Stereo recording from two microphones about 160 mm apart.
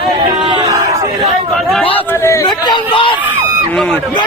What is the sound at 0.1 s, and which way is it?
Chatter, 30° right (ahead or behind).